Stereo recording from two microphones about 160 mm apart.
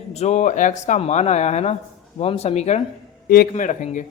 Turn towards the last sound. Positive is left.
turn(degrees=50)  # may be behind; listen again after turning